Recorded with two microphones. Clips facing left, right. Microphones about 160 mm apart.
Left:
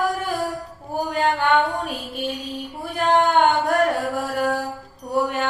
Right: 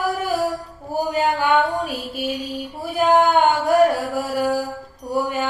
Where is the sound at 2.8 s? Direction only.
5° right (ahead or behind).